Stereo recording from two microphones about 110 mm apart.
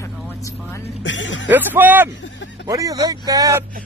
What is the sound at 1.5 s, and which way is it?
Speech, 15° right (ahead or behind).